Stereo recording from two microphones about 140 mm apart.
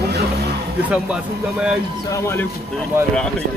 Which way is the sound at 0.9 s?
5° right (ahead or behind).